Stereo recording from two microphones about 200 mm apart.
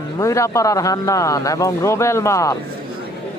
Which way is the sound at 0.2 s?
15° left (ahead or behind).